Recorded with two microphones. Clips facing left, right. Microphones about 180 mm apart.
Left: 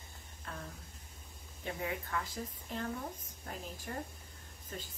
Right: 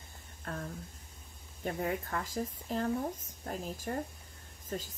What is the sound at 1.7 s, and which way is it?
Speech, 45° right (ahead or behind).